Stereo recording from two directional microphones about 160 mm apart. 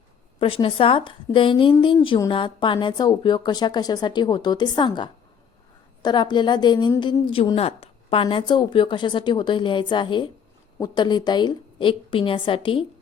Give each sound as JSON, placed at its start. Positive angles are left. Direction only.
{"t": 0.3, "sound": "a woman's voice", "side_deg": 35}